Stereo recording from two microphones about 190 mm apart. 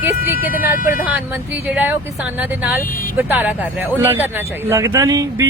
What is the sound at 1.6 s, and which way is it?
Speech, 10° right (ahead or behind).